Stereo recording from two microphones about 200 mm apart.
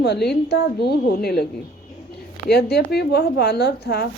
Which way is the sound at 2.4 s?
55° left (ahead or behind).